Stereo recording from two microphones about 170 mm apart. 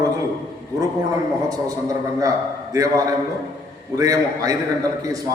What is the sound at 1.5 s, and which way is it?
A man's voice, 20° right (ahead or behind).